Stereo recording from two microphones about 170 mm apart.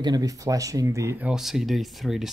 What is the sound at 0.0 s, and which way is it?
Speech, 20° right (ahead or behind).